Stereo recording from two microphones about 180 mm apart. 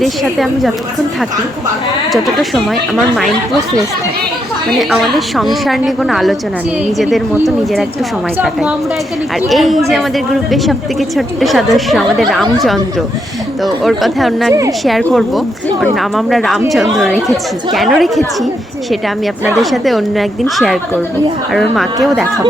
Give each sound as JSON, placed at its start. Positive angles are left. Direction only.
{"t": 0.0, "sound": "speech", "side_deg": 0}
{"t": 4.8, "sound": "speech", "side_deg": 0}
{"t": 7.4, "sound": "speech", "side_deg": 0}
{"t": 9.5, "sound": "speech", "side_deg": 0}
{"t": 11.3, "sound": "speech", "side_deg": 0}
{"t": 13.8, "sound": "speech", "side_deg": 0}
{"t": 19.5, "sound": "speech", "side_deg": 0}